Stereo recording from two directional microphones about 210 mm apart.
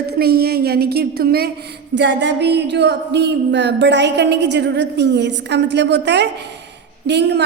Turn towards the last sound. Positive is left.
turn(degrees=-55)  # may be behind; listen again after turning